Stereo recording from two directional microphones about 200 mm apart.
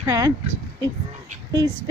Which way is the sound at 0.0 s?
15° right (ahead or behind).